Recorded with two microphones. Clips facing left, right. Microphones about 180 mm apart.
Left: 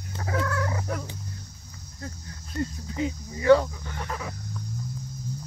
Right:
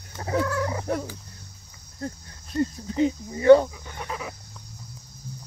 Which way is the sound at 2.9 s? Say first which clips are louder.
Right 6 dB; 30° right (ahead or behind).